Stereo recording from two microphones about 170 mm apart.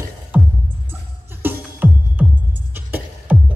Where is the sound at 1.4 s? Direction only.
10° right (ahead or behind).